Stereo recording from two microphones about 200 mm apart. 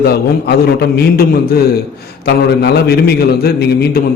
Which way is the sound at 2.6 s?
55° left (ahead or behind).